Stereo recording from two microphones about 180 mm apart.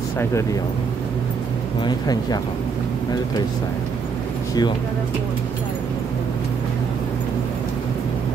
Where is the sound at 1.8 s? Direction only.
25° left (ahead or behind).